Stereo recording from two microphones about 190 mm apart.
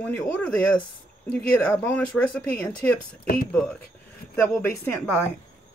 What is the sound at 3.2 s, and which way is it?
Speech, 45° left (ahead or behind).